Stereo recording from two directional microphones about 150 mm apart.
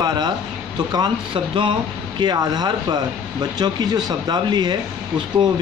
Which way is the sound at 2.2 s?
25° right (ahead or behind).